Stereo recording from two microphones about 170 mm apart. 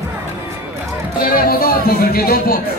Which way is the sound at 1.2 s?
60° left (ahead or behind).